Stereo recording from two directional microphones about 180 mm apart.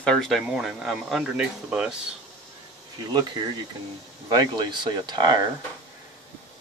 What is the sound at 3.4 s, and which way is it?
Speech, 20° right (ahead or behind).